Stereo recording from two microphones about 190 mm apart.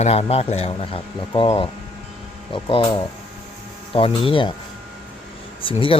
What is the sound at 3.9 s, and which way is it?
Speech, 30° left (ahead or behind).